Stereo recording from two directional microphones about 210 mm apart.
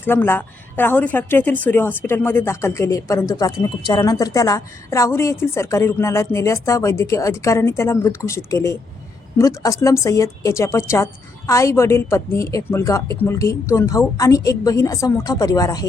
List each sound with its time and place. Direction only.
0.0 s a woman's voice: 10° left (ahead or behind)